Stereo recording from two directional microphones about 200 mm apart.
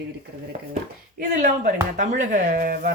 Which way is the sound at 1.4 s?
40° right (ahead or behind).